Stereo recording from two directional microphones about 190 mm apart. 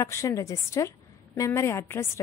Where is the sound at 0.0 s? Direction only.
15° left (ahead or behind).